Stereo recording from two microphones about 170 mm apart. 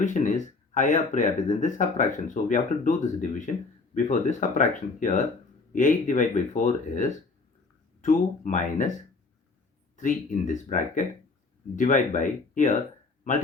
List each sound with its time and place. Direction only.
0.0 s speech: 45° left (ahead or behind)
8.0 s speech: 50° left (ahead or behind)
10.0 s speech: 50° left (ahead or behind)